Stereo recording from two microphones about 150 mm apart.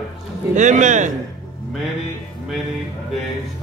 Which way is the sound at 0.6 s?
55° right (ahead or behind).